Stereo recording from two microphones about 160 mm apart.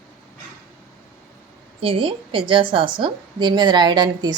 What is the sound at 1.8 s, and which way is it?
A woman's voice, 35° right (ahead or behind).